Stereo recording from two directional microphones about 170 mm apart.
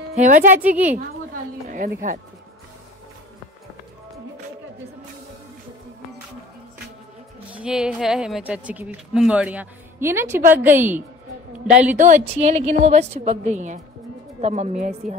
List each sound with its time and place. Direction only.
0.1 s speech: 45° right (ahead or behind)
0.7 s a sound: 50° right (ahead or behind)
7.5 s a woman's voice: 5° right (ahead or behind)
12.0 s a woman's voice: 45° right (ahead or behind)